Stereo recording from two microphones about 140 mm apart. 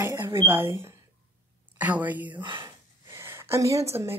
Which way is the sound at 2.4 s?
35° right (ahead or behind).